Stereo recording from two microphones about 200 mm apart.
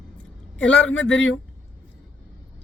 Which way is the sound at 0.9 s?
70° left (ahead or behind).